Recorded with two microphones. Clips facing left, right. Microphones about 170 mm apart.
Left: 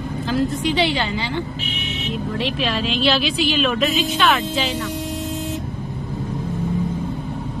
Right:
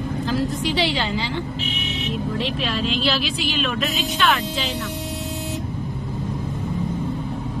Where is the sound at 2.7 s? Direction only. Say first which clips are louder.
Left 1 dB; 75° left (ahead or behind).